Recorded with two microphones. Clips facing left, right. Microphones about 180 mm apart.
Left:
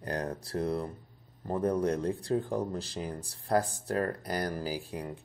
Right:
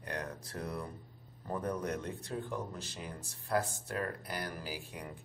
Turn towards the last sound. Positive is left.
turn(degrees=30)  # may be behind; listen again after turning